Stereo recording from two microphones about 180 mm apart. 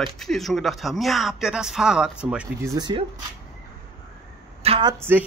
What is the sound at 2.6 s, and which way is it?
Speech, 20° right (ahead or behind).